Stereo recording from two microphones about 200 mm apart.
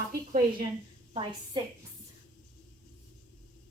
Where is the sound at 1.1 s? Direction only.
25° right (ahead or behind).